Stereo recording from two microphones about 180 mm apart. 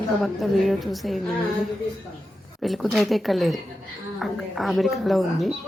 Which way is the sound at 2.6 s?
Centre (ahead or behind).